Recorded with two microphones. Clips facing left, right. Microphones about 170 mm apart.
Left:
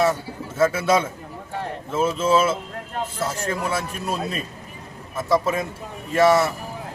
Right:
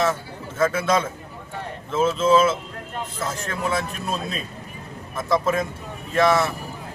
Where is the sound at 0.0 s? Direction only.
10° left (ahead or behind).